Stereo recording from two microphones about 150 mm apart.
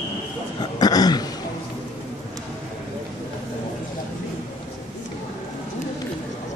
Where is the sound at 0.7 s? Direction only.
25° left (ahead or behind).